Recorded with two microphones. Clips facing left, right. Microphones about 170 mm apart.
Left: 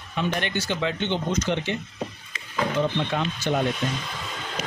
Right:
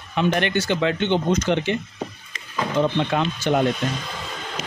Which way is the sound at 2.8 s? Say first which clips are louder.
Right 6 dB; 75° right (ahead or behind).